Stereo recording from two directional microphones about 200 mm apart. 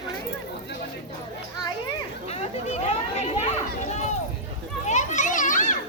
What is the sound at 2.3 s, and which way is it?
Chatter, 30° left (ahead or behind).